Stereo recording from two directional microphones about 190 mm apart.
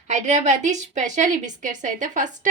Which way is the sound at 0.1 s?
40° right (ahead or behind).